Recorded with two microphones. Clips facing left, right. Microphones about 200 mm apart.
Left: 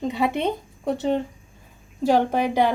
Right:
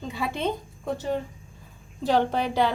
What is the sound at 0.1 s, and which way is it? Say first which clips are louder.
Speech: left 3 dB; 20° left (ahead or behind).